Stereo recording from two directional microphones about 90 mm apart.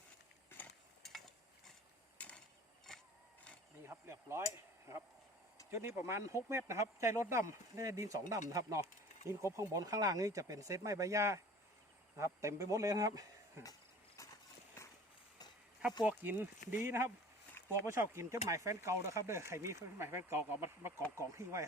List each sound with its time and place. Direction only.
1.0 s stir: centre (ahead or behind)
2.1 s a sound: 15° left (ahead or behind)
2.9 s vehicle: 5° left (ahead or behind)
3.8 s speech: 30° right (ahead or behind)
16.0 s speech: 20° right (ahead or behind)